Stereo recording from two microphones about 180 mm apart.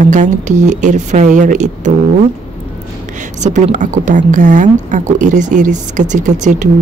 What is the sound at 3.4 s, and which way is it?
Speech, 45° right (ahead or behind).